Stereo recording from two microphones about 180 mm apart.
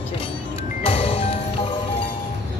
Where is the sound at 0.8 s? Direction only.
30° left (ahead or behind).